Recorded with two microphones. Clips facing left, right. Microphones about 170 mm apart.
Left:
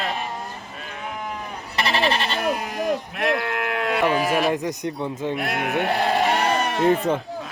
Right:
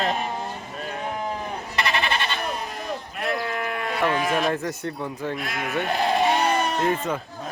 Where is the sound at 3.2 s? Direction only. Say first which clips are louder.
Left 3 dB; 75° left (ahead or behind).